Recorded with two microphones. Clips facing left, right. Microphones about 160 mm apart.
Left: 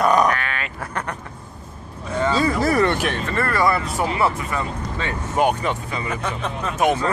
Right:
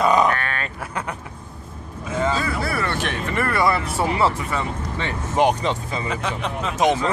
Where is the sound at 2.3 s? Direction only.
40° left (ahead or behind).